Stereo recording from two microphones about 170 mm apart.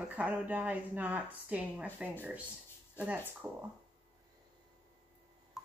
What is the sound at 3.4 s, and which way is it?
Speech, 10° right (ahead or behind).